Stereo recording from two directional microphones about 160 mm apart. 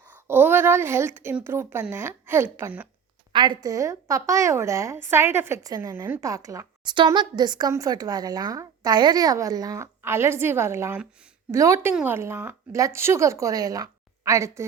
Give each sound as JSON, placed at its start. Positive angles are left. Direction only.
{"t": 0.1, "sound": "a woman's voice", "side_deg": -15}
{"t": 3.3, "sound": "a woman's voice", "side_deg": -30}